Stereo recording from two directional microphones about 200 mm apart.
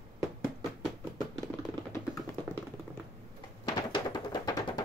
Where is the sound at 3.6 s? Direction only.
20° left (ahead or behind).